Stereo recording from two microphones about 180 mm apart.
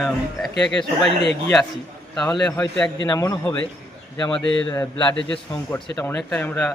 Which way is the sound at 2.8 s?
20° left (ahead or behind).